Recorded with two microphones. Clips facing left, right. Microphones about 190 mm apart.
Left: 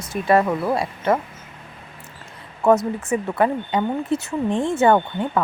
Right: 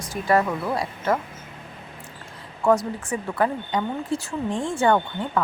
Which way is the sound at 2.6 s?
20° left (ahead or behind).